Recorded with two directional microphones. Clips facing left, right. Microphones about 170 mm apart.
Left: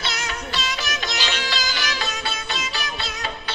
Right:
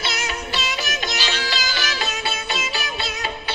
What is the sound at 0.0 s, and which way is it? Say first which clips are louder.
Music: right 2 dB; 5° right (ahead or behind).